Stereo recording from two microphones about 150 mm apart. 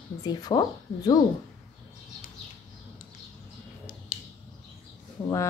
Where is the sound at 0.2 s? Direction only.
25° left (ahead or behind).